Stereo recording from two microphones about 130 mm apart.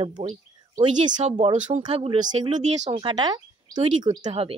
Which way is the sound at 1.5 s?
70° right (ahead or behind).